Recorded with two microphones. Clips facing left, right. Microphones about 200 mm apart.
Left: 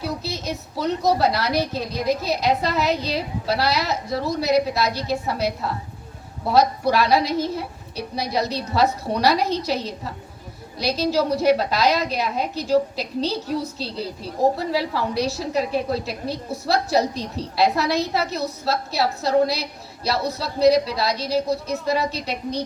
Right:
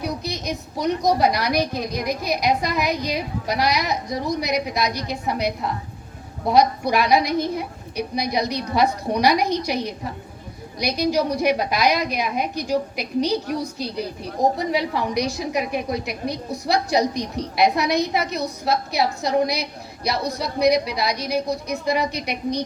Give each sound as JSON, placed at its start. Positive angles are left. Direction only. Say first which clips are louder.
{"t": 0.0, "sound": "a woman's voice", "louder": "right 1 dB", "side_deg": -15}